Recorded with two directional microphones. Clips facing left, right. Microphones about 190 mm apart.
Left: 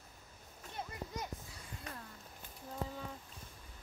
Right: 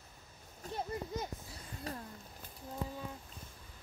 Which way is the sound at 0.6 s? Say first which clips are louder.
Right 9 dB; 35° right (ahead or behind).